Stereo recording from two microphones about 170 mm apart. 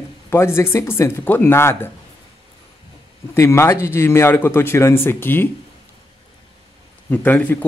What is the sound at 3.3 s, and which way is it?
Speech, 15° left (ahead or behind).